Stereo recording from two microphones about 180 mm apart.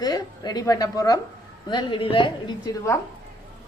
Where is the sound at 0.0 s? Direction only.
20° left (ahead or behind).